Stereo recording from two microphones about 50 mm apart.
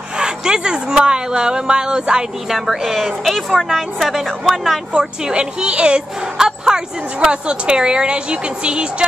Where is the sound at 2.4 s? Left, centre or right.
Centre.